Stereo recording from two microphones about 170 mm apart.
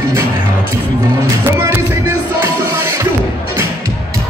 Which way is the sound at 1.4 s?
15° right (ahead or behind).